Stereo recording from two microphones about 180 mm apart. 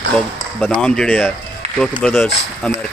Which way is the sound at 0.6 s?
5° left (ahead or behind).